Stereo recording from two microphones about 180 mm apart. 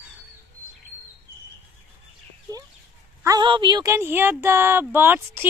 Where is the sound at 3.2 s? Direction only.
25° right (ahead or behind).